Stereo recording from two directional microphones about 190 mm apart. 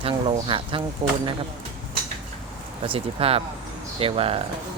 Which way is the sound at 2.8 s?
30° right (ahead or behind).